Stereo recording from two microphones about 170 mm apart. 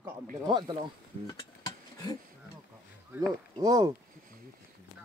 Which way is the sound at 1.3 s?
25° left (ahead or behind).